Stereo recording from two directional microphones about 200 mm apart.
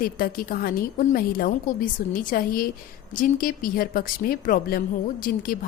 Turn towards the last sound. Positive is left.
turn(degrees=45)  # may be behind; listen again after turning